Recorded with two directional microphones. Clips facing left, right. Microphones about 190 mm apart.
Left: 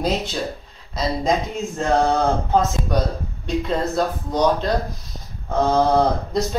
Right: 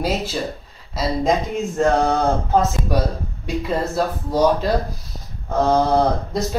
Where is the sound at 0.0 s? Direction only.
5° right (ahead or behind).